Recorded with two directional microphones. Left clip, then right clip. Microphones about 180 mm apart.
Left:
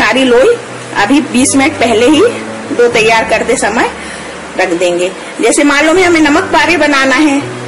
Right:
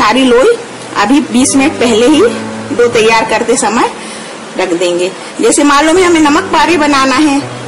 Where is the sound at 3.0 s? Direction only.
30° right (ahead or behind).